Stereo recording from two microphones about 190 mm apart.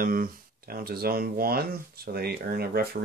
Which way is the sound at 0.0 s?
50° right (ahead or behind).